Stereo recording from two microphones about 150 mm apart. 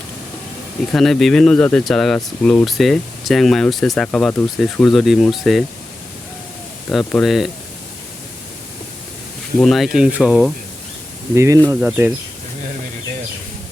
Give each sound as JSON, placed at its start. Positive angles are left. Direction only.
{"t": 0.9, "sound": "speech", "side_deg": 0}
{"t": 7.2, "sound": "speech", "side_deg": 0}
{"t": 9.6, "sound": "speech", "side_deg": 0}
{"t": 11.3, "sound": "speech", "side_deg": -20}